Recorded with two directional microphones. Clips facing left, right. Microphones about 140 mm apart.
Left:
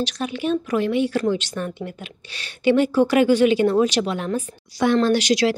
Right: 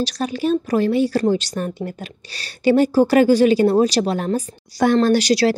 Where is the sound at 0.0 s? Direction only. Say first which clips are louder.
Right 3 dB; 40° right (ahead or behind).